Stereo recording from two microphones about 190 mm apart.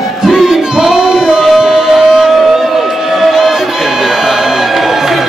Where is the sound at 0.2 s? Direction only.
Centre (ahead or behind).